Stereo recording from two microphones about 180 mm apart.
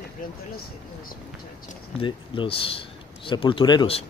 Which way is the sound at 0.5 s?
55° left (ahead or behind).